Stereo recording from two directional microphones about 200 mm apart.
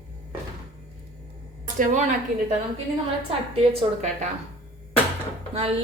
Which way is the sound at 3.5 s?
30° right (ahead or behind).